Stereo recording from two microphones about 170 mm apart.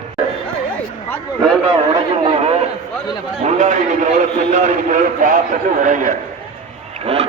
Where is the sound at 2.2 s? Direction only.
35° right (ahead or behind).